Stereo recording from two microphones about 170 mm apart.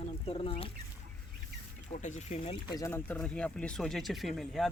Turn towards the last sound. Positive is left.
turn(degrees=0)  # may be behind; listen again after turning